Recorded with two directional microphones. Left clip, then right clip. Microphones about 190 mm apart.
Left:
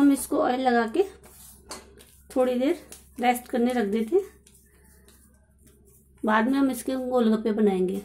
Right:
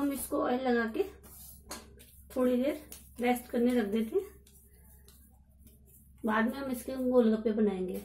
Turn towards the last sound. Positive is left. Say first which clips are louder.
# left 6 dB
turn(degrees=50)  # may be behind; listen again after turning